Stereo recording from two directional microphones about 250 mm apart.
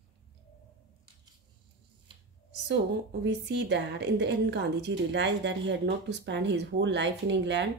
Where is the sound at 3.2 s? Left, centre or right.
Right.